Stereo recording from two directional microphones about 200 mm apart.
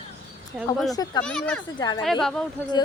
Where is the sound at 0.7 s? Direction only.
20° left (ahead or behind).